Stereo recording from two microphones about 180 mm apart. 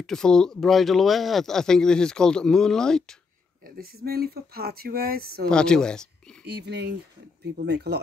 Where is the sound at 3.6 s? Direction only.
55° right (ahead or behind).